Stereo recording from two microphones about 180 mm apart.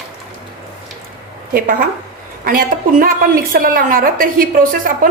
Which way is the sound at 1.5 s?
50° right (ahead or behind).